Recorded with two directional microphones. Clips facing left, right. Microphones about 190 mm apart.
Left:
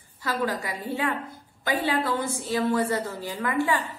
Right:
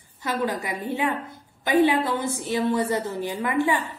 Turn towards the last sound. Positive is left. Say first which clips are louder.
# right 2 dB
turn(degrees=-20)  # may be behind; listen again after turning